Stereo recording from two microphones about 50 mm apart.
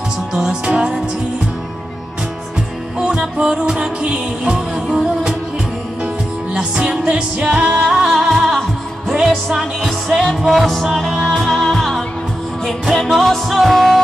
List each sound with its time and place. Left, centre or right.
0.3 s music: centre
3.0 s music: centre
6.5 s music: centre
7.9 s music: centre